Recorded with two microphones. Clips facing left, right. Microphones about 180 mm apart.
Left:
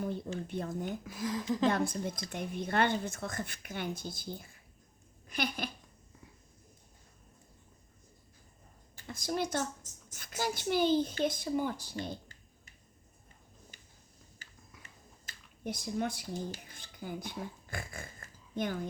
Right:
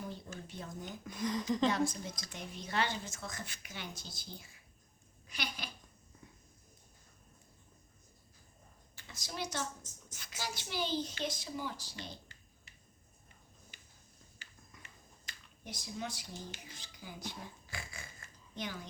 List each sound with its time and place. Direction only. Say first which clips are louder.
0.4 s a woman's voice: left 8 dB; 55° left (ahead or behind)
1.0 s speech: right 4 dB; 5° left (ahead or behind)
1.7 s a woman's voice: left 2 dB; 55° left (ahead or behind)
9.0 s speech: left 8 dB; 50° left (ahead or behind)
13.7 s a sound: left 2 dB; 45° left (ahead or behind)
15.3 s a sound: left 10 dB; 55° left (ahead or behind)